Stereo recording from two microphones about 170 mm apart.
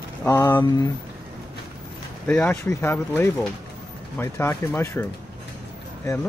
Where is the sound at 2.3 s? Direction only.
10° left (ahead or behind).